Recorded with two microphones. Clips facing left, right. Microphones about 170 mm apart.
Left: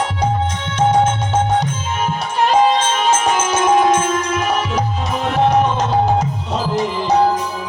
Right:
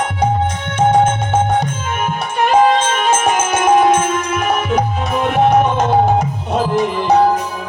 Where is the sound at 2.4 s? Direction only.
55° right (ahead or behind).